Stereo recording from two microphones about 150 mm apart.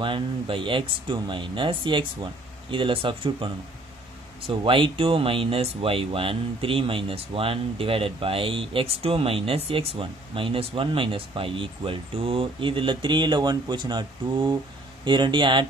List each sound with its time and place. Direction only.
0.0 s speech: 35° right (ahead or behind)